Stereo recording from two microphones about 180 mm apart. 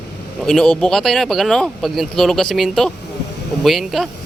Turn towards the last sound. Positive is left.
turn(degrees=0)  # may be behind; listen again after turning